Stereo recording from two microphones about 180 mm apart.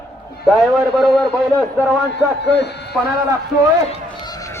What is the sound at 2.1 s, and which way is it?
Speech, 70° left (ahead or behind).